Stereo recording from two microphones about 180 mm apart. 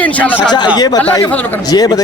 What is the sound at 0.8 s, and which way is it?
Speech, 20° left (ahead or behind).